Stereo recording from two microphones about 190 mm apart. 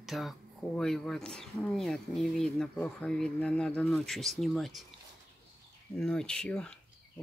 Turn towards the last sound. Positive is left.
turn(degrees=5)  # may be behind; listen again after turning